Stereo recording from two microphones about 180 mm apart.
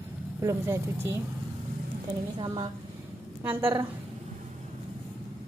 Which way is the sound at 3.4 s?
10° right (ahead or behind).